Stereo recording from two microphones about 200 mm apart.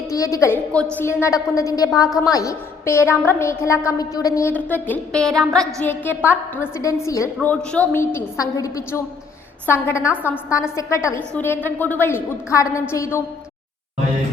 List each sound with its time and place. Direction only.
0.1 s a woman's voice: 15° left (ahead or behind)